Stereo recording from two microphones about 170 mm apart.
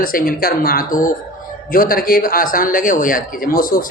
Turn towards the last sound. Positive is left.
turn(degrees=55)  # may be behind; listen again after turning